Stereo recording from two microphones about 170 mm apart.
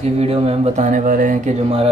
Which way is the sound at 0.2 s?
35° right (ahead or behind).